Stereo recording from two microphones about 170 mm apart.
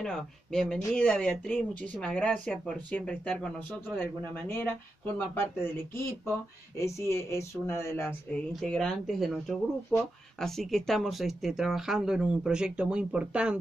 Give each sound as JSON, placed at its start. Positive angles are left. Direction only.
{"t": 0.0, "sound": "speech", "side_deg": 5}